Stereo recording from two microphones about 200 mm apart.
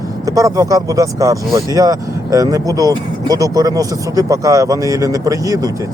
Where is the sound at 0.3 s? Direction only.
15° right (ahead or behind).